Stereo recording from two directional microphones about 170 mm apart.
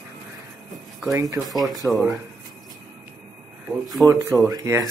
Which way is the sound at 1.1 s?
20° right (ahead or behind).